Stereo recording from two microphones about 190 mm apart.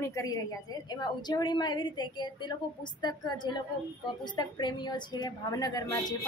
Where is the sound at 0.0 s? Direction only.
15° left (ahead or behind).